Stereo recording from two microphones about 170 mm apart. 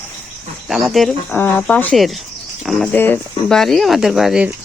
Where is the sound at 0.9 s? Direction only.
Centre (ahead or behind).